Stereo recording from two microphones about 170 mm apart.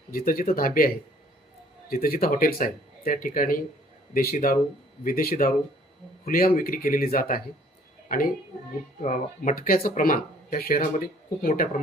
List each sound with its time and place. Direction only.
0.1 s speech: 55° left (ahead or behind)
8.0 s a sound: 55° left (ahead or behind)
9.0 s speech: 50° left (ahead or behind)